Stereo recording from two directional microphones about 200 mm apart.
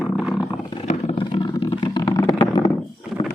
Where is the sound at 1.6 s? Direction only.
20° left (ahead or behind).